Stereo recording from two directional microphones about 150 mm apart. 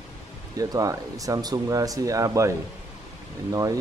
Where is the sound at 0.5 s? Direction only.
25° right (ahead or behind).